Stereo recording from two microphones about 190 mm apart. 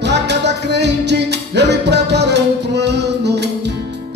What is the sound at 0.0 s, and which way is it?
Music, 65° right (ahead or behind).